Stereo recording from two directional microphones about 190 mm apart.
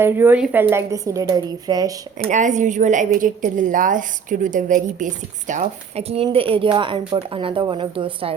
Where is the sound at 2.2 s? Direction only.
40° right (ahead or behind).